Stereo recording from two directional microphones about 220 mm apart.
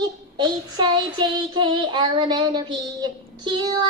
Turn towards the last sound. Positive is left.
turn(degrees=-20)  # may be behind; listen again after turning